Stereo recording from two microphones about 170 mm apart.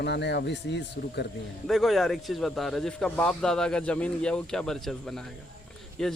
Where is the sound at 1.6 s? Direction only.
Centre (ahead or behind).